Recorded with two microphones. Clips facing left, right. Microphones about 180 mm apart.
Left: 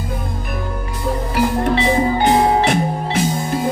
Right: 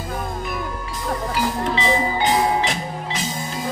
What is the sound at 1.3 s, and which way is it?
Music, 55° left (ahead or behind).